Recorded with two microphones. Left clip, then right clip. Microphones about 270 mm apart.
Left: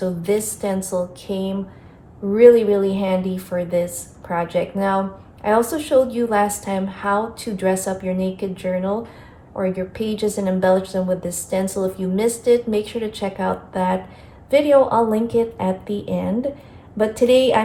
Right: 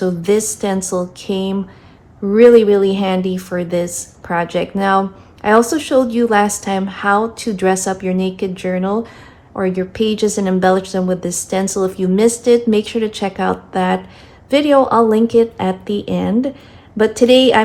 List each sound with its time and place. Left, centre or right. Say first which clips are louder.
0.0 s a woman's voice: right 5 dB; right